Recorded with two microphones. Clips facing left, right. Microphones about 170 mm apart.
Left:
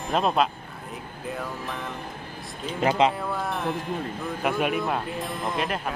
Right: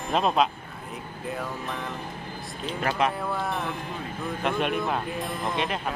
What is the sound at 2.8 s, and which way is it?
Speech, 20° left (ahead or behind).